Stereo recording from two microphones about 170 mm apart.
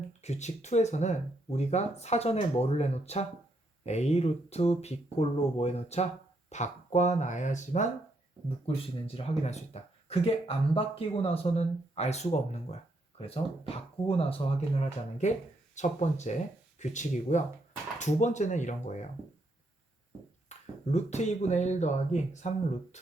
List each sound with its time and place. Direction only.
0.2 s speech: 40° left (ahead or behind)
8.4 s speech: 35° left (ahead or behind)
20.5 s a sound: 40° left (ahead or behind)
20.9 s speech: 40° left (ahead or behind)